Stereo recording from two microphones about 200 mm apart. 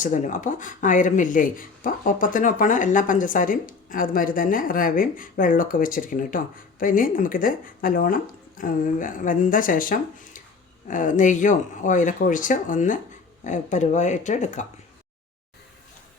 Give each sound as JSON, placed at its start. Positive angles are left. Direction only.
{"t": 0.0, "sound": "speech", "side_deg": 40}